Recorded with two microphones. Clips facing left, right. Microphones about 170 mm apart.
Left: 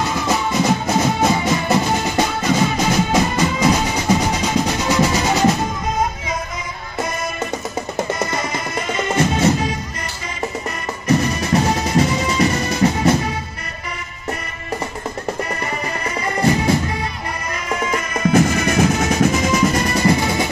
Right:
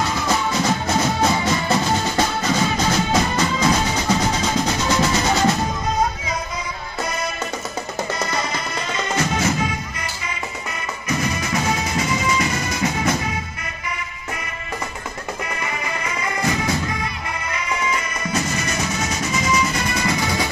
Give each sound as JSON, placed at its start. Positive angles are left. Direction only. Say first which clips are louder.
{"t": 0.3, "sound": "music", "louder": "left 4 dB", "side_deg": 15}
{"t": 8.9, "sound": "music", "louder": "left 4 dB", "side_deg": 25}
{"t": 11.1, "sound": "music", "louder": "left 7 dB", "side_deg": 35}
{"t": 16.3, "sound": "music", "louder": "left 7 dB", "side_deg": 30}
{"t": 17.5, "sound": "music", "louder": "left 3 dB", "side_deg": 50}